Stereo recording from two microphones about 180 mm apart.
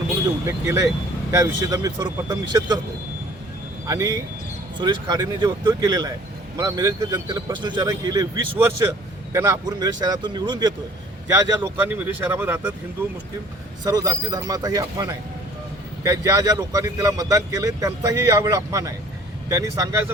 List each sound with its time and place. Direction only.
0.4 s speech: 15° right (ahead or behind)
3.8 s speech: 20° right (ahead or behind)
13.8 s speech: 20° right (ahead or behind)